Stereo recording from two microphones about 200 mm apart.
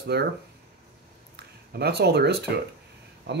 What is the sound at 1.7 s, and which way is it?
Speech, 55° right (ahead or behind).